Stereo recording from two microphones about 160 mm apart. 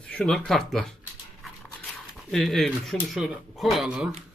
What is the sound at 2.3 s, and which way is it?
Speech, centre (ahead or behind).